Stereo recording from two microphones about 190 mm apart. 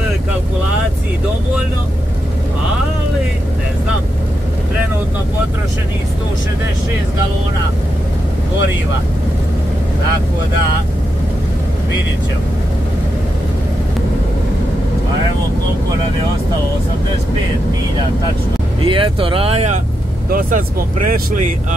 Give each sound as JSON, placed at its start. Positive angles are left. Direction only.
{"t": 18.9, "sound": "speech", "side_deg": -25}
{"t": 20.2, "sound": "speech", "side_deg": -50}